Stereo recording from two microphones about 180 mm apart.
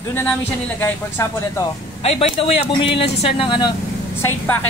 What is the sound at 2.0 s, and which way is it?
A man's voice, 35° left (ahead or behind).